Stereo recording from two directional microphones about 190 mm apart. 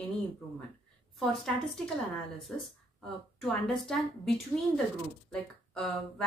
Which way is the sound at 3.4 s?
5° left (ahead or behind).